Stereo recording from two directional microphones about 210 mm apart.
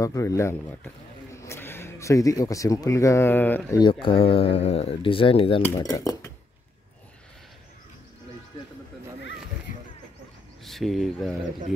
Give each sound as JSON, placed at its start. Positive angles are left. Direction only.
{"t": 0.0, "sound": "a man's voice", "side_deg": 15}
{"t": 3.8, "sound": "speech", "side_deg": 25}
{"t": 5.8, "sound": "speech", "side_deg": 15}
{"t": 9.7, "sound": "a sound", "side_deg": 40}
{"t": 10.6, "sound": "speech", "side_deg": 0}